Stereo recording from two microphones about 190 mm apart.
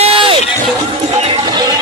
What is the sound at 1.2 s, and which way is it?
Music, 20° right (ahead or behind).